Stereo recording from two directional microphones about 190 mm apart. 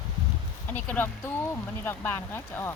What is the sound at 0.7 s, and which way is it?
Speech, 10° left (ahead or behind).